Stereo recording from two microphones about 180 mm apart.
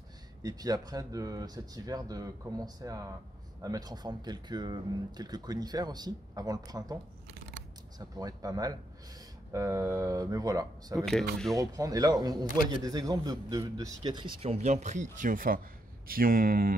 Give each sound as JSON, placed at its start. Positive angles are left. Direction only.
{"t": 0.4, "sound": "speech", "side_deg": -20}
{"t": 8.0, "sound": "speech", "side_deg": -20}
{"t": 11.1, "sound": "speech", "side_deg": 0}
{"t": 11.5, "sound": "speech", "side_deg": -20}